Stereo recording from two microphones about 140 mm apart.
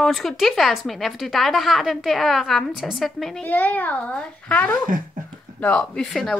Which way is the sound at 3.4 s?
10° left (ahead or behind).